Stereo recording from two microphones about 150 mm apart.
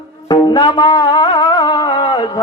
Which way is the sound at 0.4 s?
35° left (ahead or behind).